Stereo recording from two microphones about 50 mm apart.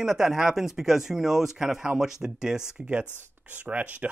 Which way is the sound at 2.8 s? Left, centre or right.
Right.